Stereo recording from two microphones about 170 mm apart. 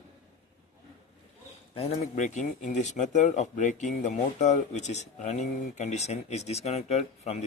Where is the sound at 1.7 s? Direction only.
35° left (ahead or behind).